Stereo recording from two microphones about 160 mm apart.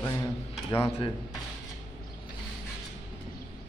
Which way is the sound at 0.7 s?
15° left (ahead or behind).